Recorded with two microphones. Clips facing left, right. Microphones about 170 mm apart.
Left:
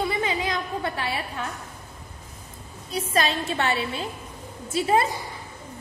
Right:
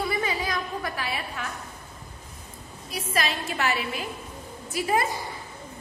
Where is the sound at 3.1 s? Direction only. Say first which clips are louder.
Left 4 dB; 30° left (ahead or behind).